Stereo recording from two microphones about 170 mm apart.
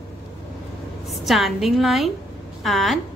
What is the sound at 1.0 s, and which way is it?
A woman's voice, centre (ahead or behind).